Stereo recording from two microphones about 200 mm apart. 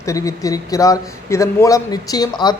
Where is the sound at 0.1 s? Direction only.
15° left (ahead or behind).